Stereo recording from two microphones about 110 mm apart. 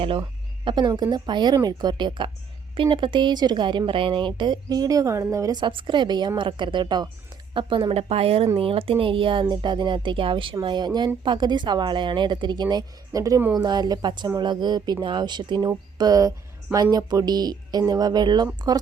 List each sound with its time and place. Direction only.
0.0 s speech: 50° right (ahead or behind); by 5.5 s 30° right (ahead or behind)
5.5 s a woman's voice: 50° right (ahead or behind)